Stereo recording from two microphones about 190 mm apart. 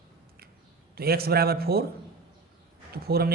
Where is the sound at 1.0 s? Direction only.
55° right (ahead or behind).